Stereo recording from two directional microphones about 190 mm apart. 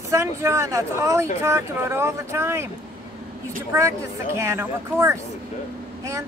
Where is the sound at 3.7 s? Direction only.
15° right (ahead or behind).